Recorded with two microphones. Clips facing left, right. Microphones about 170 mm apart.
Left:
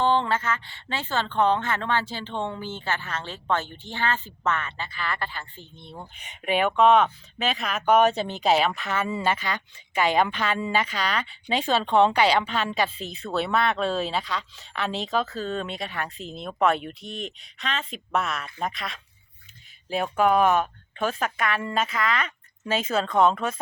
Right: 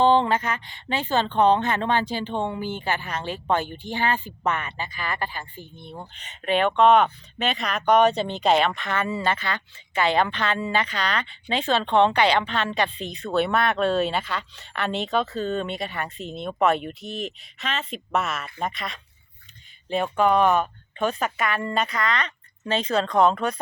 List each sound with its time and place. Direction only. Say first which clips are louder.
0.0 s speech: right 4 dB; 15° right (ahead or behind)
6.1 s speech: right 2 dB; 10° left (ahead or behind)